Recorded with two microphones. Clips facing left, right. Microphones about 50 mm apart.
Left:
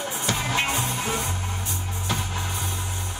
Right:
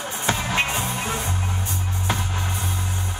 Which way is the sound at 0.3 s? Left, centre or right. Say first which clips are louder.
Right 2 dB; right.